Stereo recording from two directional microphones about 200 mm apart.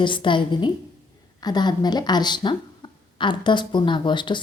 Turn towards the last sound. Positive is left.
turn(degrees=25)  # may be behind; listen again after turning